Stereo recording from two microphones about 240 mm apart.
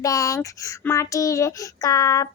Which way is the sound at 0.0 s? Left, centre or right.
Centre.